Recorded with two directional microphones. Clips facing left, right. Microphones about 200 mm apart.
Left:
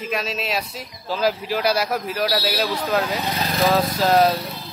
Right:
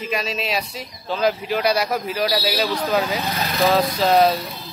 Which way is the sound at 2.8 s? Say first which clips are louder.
Right 1 dB; 5° right (ahead or behind).